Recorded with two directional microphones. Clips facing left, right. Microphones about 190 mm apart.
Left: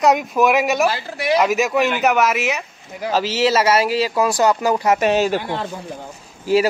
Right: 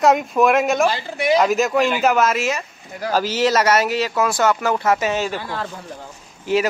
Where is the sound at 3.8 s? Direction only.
30° left (ahead or behind).